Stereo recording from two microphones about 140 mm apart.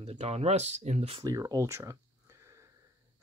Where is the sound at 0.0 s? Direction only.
50° right (ahead or behind).